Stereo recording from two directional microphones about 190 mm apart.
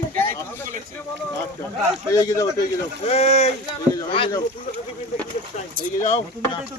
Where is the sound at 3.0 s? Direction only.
35° left (ahead or behind).